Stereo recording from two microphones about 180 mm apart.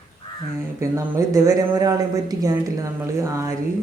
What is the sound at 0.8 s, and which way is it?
Speech, 15° right (ahead or behind).